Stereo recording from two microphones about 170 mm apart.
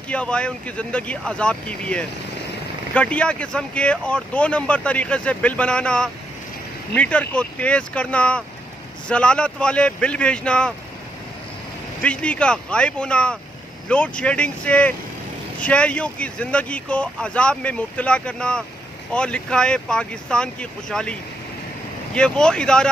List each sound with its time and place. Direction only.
0.1 s speech: 5° left (ahead or behind)
12.0 s speech: 5° left (ahead or behind)